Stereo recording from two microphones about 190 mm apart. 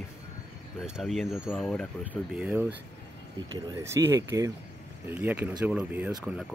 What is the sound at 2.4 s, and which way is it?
Speech, 10° right (ahead or behind).